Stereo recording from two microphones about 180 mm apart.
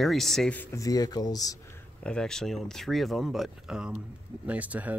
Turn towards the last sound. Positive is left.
turn(degrees=-10)  # may be behind; listen again after turning